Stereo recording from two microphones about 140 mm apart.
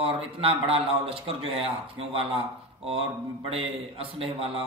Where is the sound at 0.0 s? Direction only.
40° right (ahead or behind).